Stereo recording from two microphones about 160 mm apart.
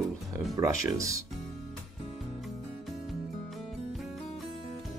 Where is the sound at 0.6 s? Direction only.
20° right (ahead or behind).